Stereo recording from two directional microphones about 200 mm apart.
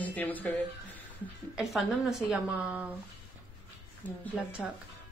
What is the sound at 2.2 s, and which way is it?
Music, 5° right (ahead or behind).